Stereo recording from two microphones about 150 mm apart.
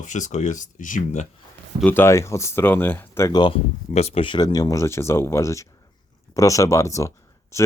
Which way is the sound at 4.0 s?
40° left (ahead or behind).